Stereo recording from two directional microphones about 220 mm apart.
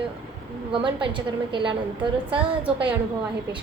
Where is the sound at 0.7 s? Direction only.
20° right (ahead or behind).